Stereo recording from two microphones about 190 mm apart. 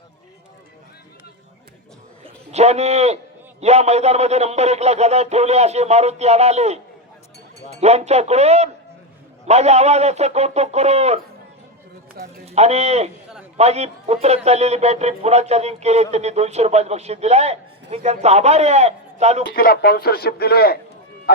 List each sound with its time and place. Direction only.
2.2 s a man's voice: 35° right (ahead or behind)
7.8 s a man's voice: 35° right (ahead or behind)
12.5 s a man's voice: 35° right (ahead or behind)
19.5 s a man's voice: 50° left (ahead or behind)